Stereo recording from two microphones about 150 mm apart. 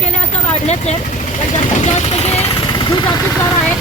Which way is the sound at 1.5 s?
50° left (ahead or behind).